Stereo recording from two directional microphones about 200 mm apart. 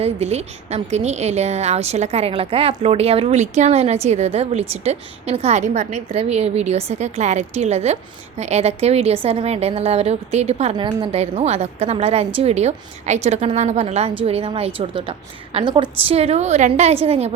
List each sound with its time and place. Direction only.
0.0 s a woman's voice: 30° right (ahead or behind)